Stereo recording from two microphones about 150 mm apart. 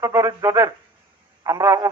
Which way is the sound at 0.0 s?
20° right (ahead or behind).